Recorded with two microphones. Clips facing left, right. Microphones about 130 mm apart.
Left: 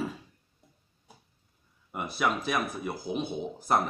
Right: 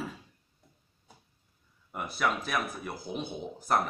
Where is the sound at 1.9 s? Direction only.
10° left (ahead or behind).